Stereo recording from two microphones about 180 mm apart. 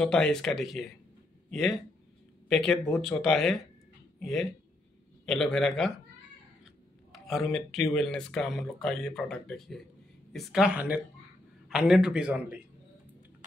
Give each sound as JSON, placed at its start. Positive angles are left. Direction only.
{"t": 0.0, "sound": "speech", "side_deg": 5}